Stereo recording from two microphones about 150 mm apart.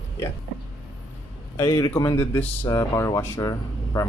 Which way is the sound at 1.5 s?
25° left (ahead or behind).